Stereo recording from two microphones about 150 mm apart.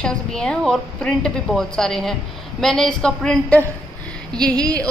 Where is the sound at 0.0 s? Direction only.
5° left (ahead or behind).